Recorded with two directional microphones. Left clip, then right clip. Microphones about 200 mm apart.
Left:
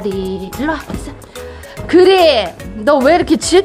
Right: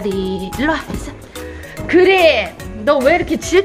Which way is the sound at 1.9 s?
30° left (ahead or behind).